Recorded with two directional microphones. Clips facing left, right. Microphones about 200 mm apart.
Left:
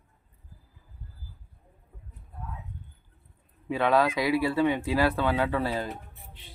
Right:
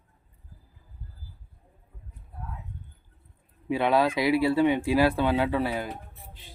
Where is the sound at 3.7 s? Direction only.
15° right (ahead or behind).